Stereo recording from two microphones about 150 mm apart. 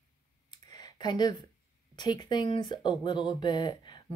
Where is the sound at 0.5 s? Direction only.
30° left (ahead or behind).